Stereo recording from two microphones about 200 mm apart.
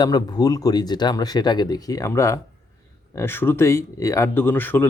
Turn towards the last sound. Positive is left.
turn(degrees=10)  # may be behind; listen again after turning